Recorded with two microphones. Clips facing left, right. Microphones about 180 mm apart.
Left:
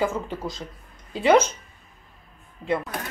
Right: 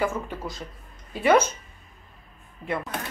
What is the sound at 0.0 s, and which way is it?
Speech, 20° left (ahead or behind).